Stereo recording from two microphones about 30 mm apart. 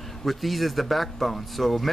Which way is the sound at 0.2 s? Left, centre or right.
Centre.